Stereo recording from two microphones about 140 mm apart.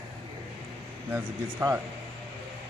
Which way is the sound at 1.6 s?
20° right (ahead or behind).